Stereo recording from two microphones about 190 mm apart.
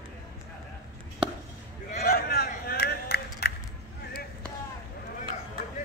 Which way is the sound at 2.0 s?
55° left (ahead or behind).